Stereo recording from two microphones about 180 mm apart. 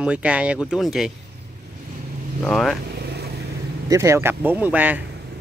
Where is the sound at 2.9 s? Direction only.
65° right (ahead or behind).